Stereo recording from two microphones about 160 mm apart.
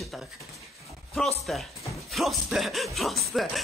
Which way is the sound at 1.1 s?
Centre (ahead or behind).